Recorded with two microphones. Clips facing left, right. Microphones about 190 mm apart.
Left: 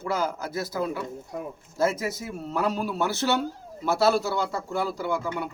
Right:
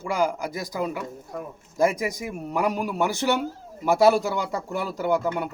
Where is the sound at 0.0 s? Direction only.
15° right (ahead or behind).